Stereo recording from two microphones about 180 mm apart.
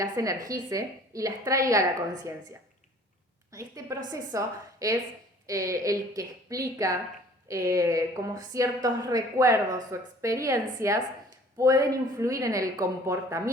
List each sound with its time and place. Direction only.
0.0 s a woman's voice: 20° right (ahead or behind)
3.5 s a woman's voice: 20° right (ahead or behind)